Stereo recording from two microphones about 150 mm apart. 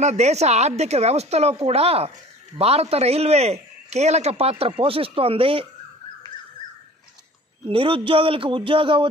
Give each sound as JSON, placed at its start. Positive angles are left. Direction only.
{"t": 0.0, "sound": "a woman's voice", "side_deg": -45}
{"t": 7.6, "sound": "a man's voice", "side_deg": -35}